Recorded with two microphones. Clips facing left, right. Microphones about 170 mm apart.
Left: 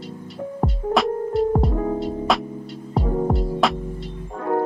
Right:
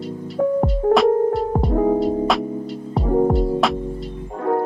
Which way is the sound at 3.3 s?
Centre (ahead or behind).